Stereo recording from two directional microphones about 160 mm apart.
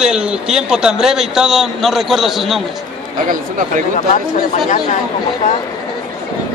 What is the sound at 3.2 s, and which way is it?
Speech, 60° right (ahead or behind).